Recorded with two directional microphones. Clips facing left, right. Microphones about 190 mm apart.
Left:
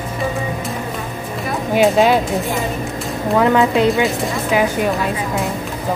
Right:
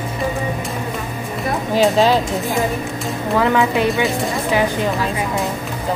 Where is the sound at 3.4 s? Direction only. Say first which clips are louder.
Left 3 dB; 15° left (ahead or behind).